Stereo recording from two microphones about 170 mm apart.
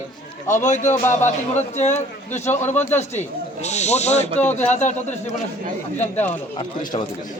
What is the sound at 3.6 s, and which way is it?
Speech, 40° left (ahead or behind).